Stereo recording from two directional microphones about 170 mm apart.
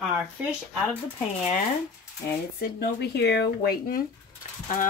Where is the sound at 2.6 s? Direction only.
70° left (ahead or behind).